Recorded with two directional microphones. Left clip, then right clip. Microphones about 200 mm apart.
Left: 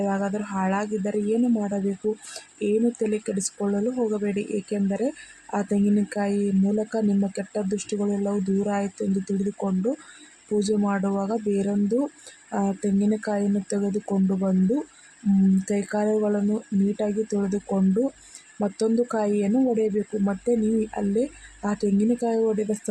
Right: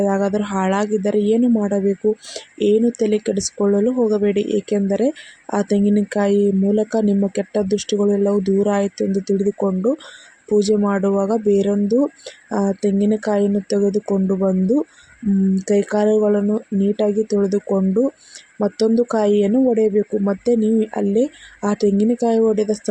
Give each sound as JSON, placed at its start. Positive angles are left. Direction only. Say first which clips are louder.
{"t": 0.0, "sound": "speech", "louder": "right 8 dB", "side_deg": -20}
{"t": 2.0, "sound": "speech", "louder": "right 7 dB", "side_deg": -5}
{"t": 3.0, "sound": "speech", "louder": "right 8 dB", "side_deg": -15}